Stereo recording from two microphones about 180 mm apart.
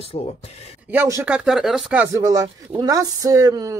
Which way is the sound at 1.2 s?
5° right (ahead or behind).